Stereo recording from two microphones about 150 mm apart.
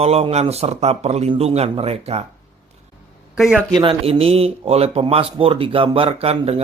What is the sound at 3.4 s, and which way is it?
Speech, 5° right (ahead or behind).